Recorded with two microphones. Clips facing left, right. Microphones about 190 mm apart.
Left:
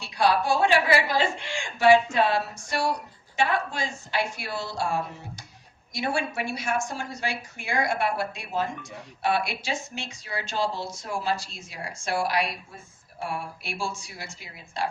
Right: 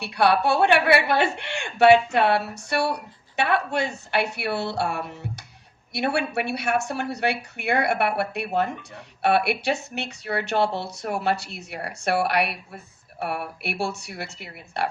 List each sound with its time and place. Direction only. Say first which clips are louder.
0.0 s speech: right 3 dB; 65° right (ahead or behind)